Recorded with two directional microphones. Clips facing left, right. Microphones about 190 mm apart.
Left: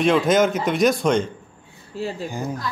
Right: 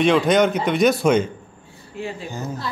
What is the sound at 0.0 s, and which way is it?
A man's voice, centre (ahead or behind).